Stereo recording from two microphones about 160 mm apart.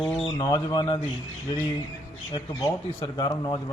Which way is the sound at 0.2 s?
30° left (ahead or behind).